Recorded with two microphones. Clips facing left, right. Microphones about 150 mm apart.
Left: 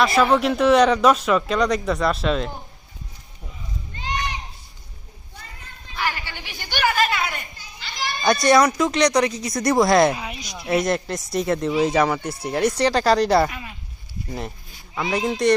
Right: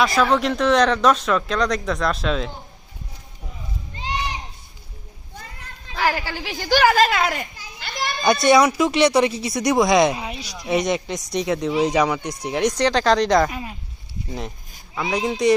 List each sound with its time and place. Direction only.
0.0 s speech: 5° left (ahead or behind)
5.9 s a sound: 90° right
6.4 s speech: 90° right
7.8 s children playing: 55° right (ahead or behind)
8.2 s speech: centre (ahead or behind)
9.2 s speech: 20° right (ahead or behind)
9.5 s speech: centre (ahead or behind)
13.5 s a sound: 35° right (ahead or behind)
14.3 s speech: centre (ahead or behind)